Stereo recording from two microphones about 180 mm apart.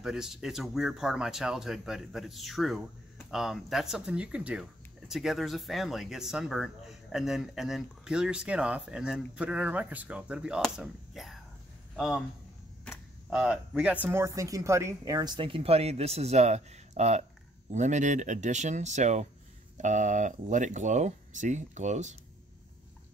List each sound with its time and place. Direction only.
0.0 s a man's voice: 5° right (ahead or behind)
12.8 s a sound: centre (ahead or behind)
14.0 s speech: 15° right (ahead or behind); by 22.1 s 40° right (ahead or behind)